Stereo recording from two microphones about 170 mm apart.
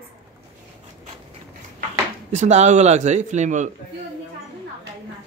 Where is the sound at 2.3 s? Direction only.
40° right (ahead or behind).